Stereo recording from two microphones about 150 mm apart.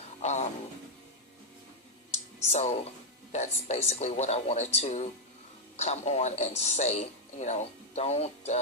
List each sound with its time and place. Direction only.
0.2 s music: 50° left (ahead or behind)
2.5 s speech: 45° left (ahead or behind)